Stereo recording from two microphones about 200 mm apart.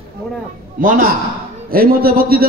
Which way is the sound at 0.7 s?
45° right (ahead or behind).